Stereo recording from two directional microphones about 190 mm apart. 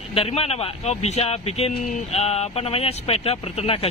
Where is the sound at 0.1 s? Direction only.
30° left (ahead or behind).